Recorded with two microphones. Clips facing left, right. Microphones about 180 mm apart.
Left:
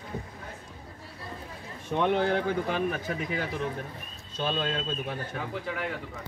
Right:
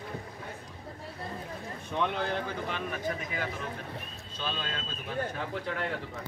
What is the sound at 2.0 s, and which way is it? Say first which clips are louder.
Speech: left 6 dB; 55° left (ahead or behind).